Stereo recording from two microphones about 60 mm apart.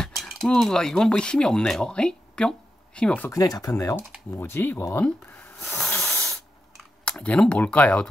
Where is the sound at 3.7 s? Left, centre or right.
Left.